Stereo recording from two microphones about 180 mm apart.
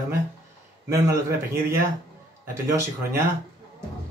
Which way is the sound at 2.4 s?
15° right (ahead or behind).